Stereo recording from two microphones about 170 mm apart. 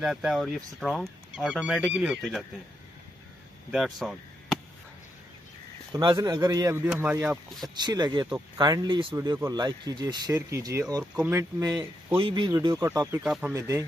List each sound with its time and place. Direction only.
0.0 s speech: centre (ahead or behind)
3.7 s speech: centre (ahead or behind)
5.9 s speech: 25° right (ahead or behind)
7.6 s speech: 25° right (ahead or behind)
12.2 s speech: 30° right (ahead or behind)
13.2 s speech: 5° right (ahead or behind)
13.5 s speech: 20° right (ahead or behind)